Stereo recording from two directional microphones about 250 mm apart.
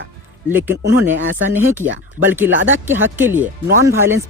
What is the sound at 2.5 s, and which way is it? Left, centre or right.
Speech, right.